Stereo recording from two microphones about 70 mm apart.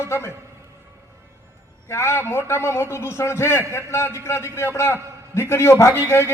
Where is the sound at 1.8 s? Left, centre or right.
Left.